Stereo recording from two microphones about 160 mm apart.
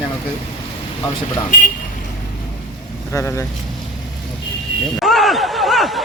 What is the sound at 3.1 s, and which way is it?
Speech, 15° left (ahead or behind).